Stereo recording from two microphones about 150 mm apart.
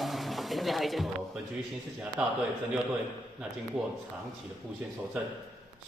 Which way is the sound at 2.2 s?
5° right (ahead or behind).